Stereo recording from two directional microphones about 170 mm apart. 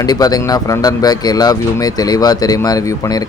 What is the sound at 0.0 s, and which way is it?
Speech, 20° left (ahead or behind).